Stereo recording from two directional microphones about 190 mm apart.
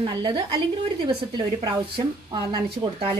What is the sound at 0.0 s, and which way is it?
A woman's voice, 25° right (ahead or behind).